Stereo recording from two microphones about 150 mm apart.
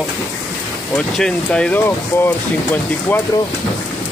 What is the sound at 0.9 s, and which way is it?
Speech, 5° left (ahead or behind).